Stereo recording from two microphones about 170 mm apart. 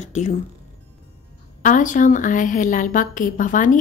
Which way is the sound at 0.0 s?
45° left (ahead or behind).